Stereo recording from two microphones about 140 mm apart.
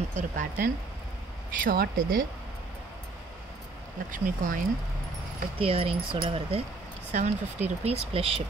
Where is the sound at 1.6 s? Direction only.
90° right.